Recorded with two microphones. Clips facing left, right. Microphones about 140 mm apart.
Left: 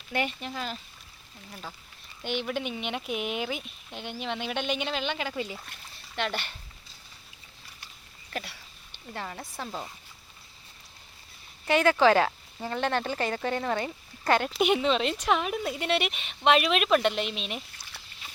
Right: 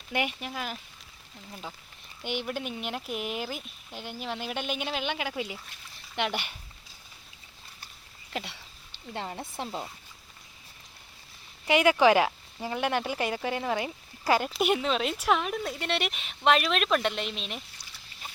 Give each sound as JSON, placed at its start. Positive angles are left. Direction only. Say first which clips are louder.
{"t": 0.1, "sound": "speech", "louder": "even", "side_deg": -15}
{"t": 2.2, "sound": "speech", "louder": "left 2 dB", "side_deg": -10}
{"t": 8.3, "sound": "a sound", "louder": "right 1 dB", "side_deg": -20}
{"t": 9.1, "sound": "speech", "louder": "right 2 dB", "side_deg": -25}
{"t": 11.6, "sound": "speech", "louder": "even", "side_deg": -15}